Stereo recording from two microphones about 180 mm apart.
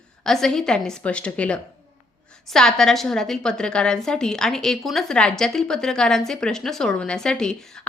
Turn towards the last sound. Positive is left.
turn(degrees=5)  # may be behind; listen again after turning